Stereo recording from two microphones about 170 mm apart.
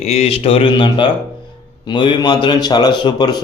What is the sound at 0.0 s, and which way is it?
Speech, 40° left (ahead or behind).